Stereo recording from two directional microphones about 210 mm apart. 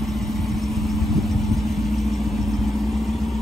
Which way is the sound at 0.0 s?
Centre (ahead or behind).